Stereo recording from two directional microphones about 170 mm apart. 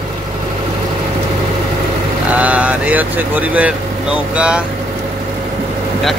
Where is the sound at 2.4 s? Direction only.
10° right (ahead or behind).